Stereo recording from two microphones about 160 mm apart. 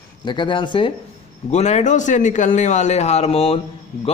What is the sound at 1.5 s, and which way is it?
A man's voice, 45° left (ahead or behind).